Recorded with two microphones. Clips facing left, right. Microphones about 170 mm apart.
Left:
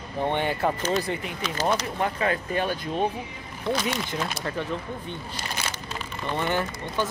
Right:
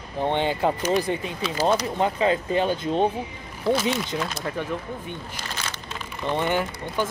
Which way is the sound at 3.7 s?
10° right (ahead or behind).